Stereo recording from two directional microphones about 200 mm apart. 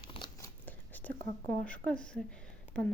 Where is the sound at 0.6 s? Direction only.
10° left (ahead or behind).